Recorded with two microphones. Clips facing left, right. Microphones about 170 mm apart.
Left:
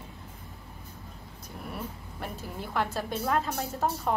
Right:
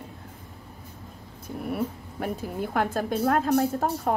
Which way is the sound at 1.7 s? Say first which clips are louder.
Right 9 dB; 55° right (ahead or behind).